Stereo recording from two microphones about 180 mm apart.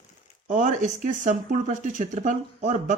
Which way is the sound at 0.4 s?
45° right (ahead or behind).